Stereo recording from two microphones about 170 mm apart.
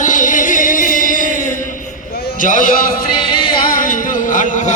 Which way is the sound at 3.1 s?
30° left (ahead or behind).